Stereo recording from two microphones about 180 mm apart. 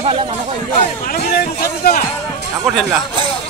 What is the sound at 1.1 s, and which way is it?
Speech, 55° left (ahead or behind).